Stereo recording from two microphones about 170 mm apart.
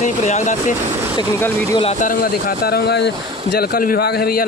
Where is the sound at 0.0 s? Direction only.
45° left (ahead or behind).